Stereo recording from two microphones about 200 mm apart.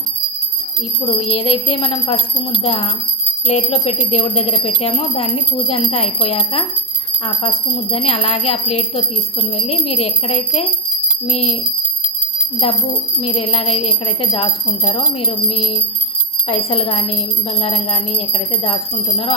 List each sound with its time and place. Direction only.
1.2 s speech: 30° left (ahead or behind)
12.6 s speech: 30° left (ahead or behind)